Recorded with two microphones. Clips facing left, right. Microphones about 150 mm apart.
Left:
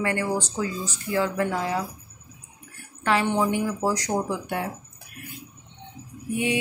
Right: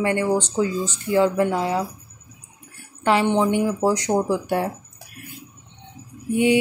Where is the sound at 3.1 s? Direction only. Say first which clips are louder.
Right 4 dB; 25° right (ahead or behind).